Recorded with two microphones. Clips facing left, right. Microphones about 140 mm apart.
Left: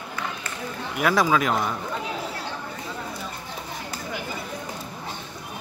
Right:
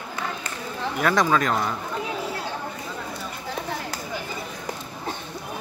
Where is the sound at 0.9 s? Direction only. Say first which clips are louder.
Even; 5° left (ahead or behind).